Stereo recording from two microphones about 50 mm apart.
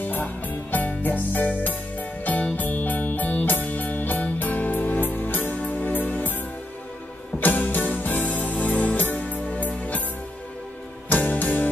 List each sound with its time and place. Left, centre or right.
0.0 s music: left
7.3 s music: left
11.1 s music: left